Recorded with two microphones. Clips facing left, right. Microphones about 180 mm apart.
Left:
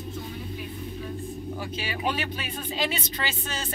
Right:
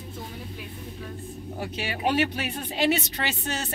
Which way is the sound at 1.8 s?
65° right (ahead or behind).